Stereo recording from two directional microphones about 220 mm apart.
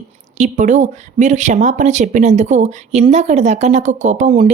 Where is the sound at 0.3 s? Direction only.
35° right (ahead or behind).